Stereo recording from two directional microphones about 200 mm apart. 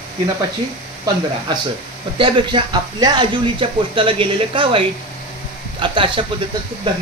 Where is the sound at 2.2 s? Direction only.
25° right (ahead or behind).